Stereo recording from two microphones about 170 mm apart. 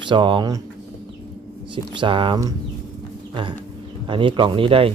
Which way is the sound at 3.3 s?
30° right (ahead or behind).